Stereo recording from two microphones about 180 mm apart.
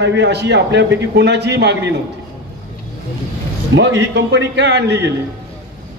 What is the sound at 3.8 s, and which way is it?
A man's voice, 75° right (ahead or behind).